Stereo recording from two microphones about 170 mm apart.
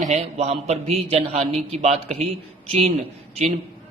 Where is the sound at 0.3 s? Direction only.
40° right (ahead or behind).